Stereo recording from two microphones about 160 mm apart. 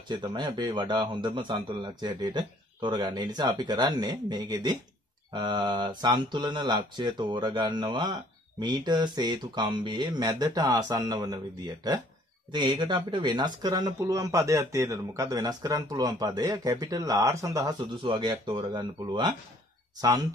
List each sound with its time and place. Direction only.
0.1 s speech: 30° right (ahead or behind)